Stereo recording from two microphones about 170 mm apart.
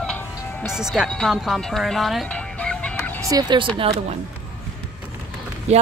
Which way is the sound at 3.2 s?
25° right (ahead or behind).